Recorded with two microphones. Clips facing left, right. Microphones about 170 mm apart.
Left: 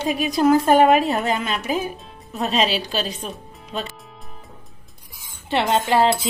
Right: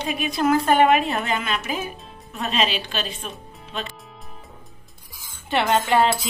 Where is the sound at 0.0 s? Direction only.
40° left (ahead or behind).